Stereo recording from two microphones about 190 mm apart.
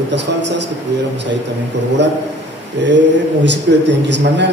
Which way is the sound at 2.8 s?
70° right (ahead or behind).